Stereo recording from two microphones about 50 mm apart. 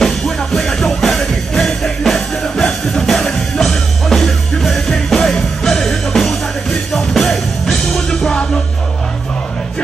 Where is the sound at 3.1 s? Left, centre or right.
Centre.